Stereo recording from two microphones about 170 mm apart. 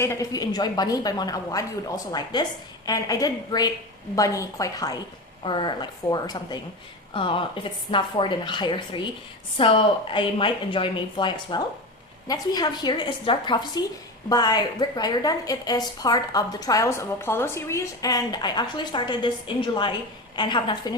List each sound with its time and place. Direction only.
0.0 s a woman's voice: 20° left (ahead or behind)